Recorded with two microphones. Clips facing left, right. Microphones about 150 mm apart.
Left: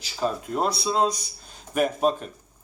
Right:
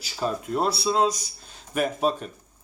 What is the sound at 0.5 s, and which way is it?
Speech, 5° right (ahead or behind).